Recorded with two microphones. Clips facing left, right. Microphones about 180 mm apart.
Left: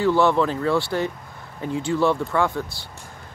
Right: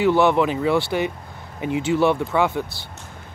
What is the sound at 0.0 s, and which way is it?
Speech, 20° right (ahead or behind).